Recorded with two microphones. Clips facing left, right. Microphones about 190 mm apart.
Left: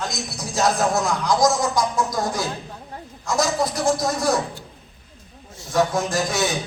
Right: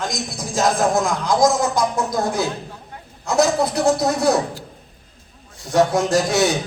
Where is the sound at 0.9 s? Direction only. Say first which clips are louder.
Right 2 dB; 55° right (ahead or behind).